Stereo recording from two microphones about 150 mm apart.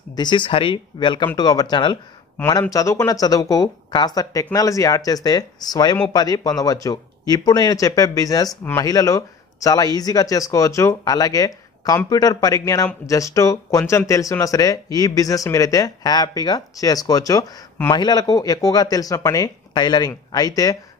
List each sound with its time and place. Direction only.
0.1 s speech: 30° left (ahead or behind)